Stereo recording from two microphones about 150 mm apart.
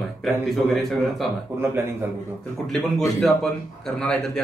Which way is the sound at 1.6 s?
15° right (ahead or behind).